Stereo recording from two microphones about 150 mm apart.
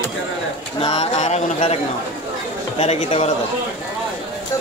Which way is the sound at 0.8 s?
45° left (ahead or behind).